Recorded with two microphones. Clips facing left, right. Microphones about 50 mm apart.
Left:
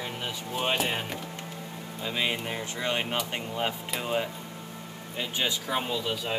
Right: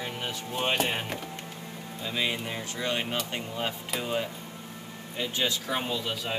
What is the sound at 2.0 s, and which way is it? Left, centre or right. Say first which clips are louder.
Speech: left 1 dB; centre.